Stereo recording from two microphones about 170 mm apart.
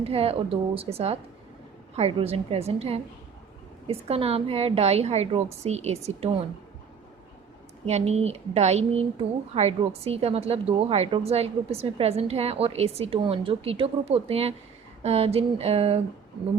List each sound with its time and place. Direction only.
0.0 s a woman's voice: 35° right (ahead or behind)
7.9 s a woman's voice: 40° right (ahead or behind)